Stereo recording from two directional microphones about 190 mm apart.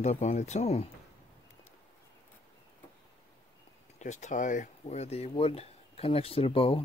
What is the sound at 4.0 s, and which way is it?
Speech, 40° left (ahead or behind).